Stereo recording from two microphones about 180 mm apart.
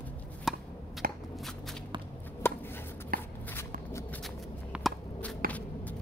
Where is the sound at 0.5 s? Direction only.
Centre (ahead or behind).